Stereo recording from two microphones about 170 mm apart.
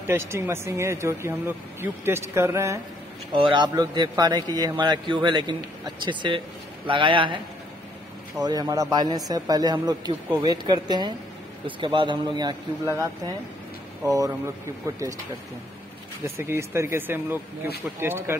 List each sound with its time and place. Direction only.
0.0 s speech: 15° right (ahead or behind)
3.3 s a man's voice: 30° right (ahead or behind)
8.4 s a man's voice: 20° right (ahead or behind)
16.3 s speech: 15° right (ahead or behind)